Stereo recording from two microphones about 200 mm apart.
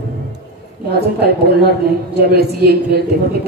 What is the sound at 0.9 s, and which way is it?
A woman's voice, 55° right (ahead or behind).